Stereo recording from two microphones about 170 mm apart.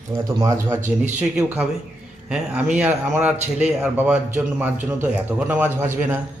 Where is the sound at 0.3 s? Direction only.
20° right (ahead or behind).